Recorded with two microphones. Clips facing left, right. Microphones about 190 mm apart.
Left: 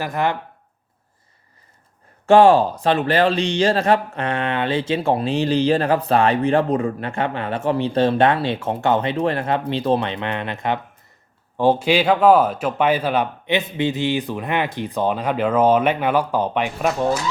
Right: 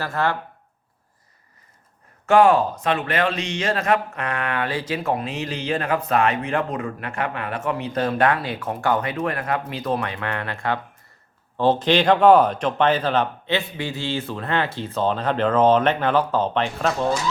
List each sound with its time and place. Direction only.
0.0 s a man's voice: 15° left (ahead or behind)
2.2 s a man's voice: 30° left (ahead or behind); by 17.2 s 15° left (ahead or behind)